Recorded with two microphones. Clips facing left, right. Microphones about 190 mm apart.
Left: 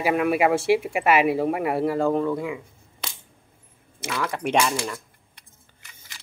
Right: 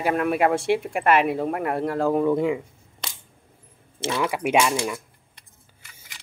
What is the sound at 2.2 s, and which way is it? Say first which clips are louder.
Speech: right 5 dB; 25° right (ahead or behind).